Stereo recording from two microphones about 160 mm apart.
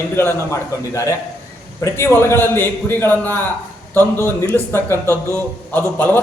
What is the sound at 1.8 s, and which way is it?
A man's voice, 15° left (ahead or behind).